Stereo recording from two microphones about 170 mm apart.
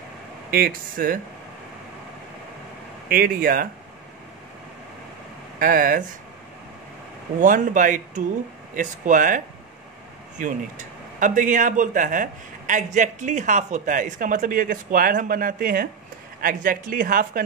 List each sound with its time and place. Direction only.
0.5 s speech: 60° right (ahead or behind)
3.1 s speech: 60° right (ahead or behind)
5.6 s speech: 55° right (ahead or behind)
7.3 s a man's voice: 50° right (ahead or behind)